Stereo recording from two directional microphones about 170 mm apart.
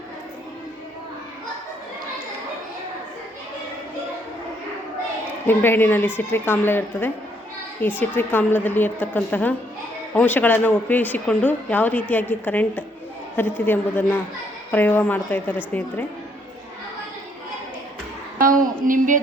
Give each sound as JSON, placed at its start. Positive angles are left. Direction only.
{"t": 5.5, "sound": "speech", "side_deg": 10}
{"t": 18.3, "sound": "speech", "side_deg": -55}